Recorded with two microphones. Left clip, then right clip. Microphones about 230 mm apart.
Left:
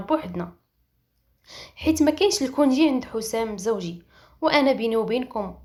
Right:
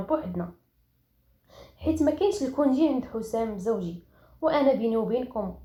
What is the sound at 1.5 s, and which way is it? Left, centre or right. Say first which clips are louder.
A woman's voice: left 5 dB; left.